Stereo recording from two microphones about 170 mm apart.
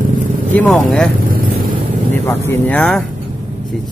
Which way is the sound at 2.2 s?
15° left (ahead or behind).